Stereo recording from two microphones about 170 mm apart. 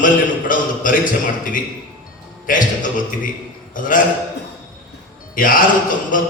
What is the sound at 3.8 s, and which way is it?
Speech, 55° left (ahead or behind).